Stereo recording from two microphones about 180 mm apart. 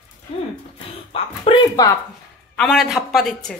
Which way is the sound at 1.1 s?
30° left (ahead or behind).